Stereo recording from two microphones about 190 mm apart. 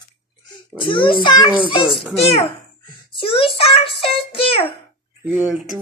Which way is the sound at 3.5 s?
30° left (ahead or behind).